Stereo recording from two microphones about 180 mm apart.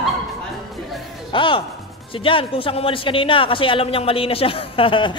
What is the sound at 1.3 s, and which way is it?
A man's voice, 30° left (ahead or behind).